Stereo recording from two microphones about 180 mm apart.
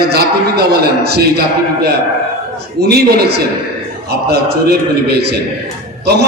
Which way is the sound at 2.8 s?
65° right (ahead or behind).